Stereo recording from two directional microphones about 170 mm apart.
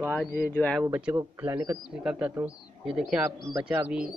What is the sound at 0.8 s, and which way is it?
A man's voice, 10° right (ahead or behind).